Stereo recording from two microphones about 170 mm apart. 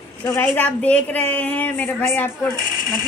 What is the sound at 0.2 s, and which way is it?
A woman's voice, 10° left (ahead or behind).